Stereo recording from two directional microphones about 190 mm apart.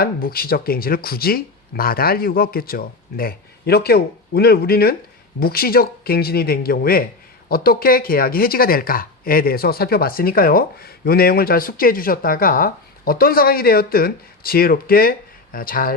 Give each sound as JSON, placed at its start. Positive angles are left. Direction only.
{"t": 0.0, "sound": "speech", "side_deg": 50}